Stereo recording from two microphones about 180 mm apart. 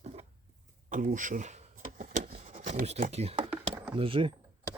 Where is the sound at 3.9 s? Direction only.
30° right (ahead or behind).